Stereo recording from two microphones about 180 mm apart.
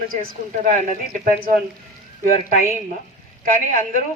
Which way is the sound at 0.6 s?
50° right (ahead or behind).